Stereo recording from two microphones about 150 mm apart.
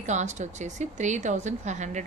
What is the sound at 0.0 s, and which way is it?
Speech, 50° right (ahead or behind).